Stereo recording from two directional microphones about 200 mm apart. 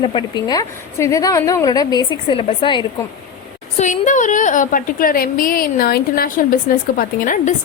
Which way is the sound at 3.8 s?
40° left (ahead or behind).